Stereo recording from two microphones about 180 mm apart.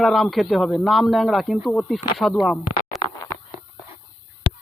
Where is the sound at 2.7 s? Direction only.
55° left (ahead or behind).